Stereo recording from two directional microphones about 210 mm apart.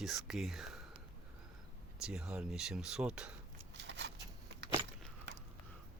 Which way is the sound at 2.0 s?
5° right (ahead or behind).